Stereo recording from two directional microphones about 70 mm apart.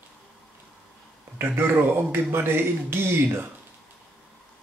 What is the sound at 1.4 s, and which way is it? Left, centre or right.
Speech, right.